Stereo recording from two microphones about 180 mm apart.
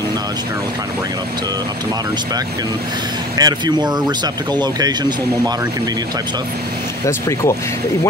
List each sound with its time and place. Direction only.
3.3 s speech: 20° right (ahead or behind)
7.1 s speech: 15° left (ahead or behind)